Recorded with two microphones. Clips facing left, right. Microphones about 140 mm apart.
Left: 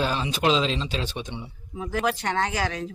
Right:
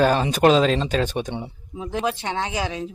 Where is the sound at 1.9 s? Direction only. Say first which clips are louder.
Even; 15° right (ahead or behind).